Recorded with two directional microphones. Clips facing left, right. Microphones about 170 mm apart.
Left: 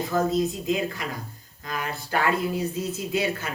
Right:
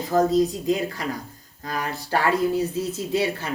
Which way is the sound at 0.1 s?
35° right (ahead or behind).